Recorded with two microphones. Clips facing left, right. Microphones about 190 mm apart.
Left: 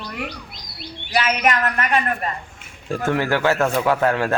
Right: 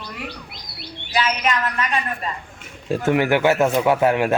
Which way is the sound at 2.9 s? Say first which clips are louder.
Right 3 dB; 20° right (ahead or behind).